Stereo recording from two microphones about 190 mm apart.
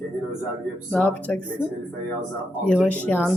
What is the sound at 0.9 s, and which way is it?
Speech, 5° left (ahead or behind).